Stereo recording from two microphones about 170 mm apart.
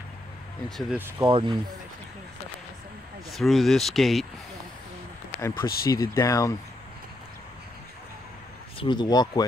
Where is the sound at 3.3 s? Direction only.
Centre (ahead or behind).